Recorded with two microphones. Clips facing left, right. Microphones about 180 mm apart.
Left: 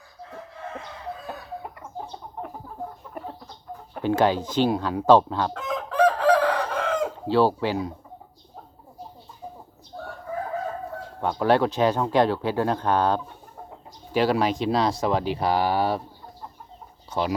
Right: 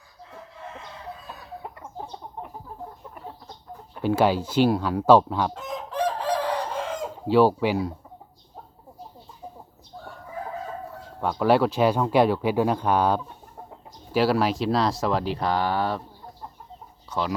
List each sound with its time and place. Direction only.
4.0 s speech: 10° right (ahead or behind)
5.5 s chicken: 60° left (ahead or behind)
7.3 s speech: 10° right (ahead or behind)
9.9 s chicken: 55° left (ahead or behind)
11.2 s speech: 5° right (ahead or behind)